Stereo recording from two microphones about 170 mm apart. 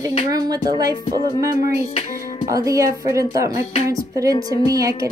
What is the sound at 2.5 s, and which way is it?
A woman's voice, 20° right (ahead or behind).